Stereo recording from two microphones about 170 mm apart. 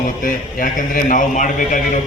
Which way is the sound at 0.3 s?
50° left (ahead or behind).